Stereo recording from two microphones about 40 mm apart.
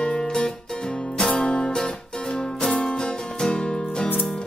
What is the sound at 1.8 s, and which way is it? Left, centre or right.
Music, centre.